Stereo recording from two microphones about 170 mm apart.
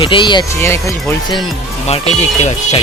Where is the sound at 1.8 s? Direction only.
40° left (ahead or behind).